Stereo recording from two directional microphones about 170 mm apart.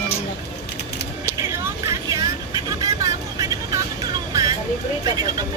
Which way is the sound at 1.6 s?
20° right (ahead or behind).